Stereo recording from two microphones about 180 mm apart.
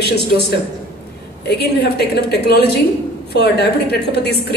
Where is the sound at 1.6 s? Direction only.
65° left (ahead or behind).